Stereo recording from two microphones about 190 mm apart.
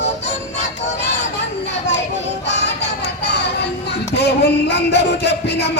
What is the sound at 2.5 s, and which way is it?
Music, 65° left (ahead or behind).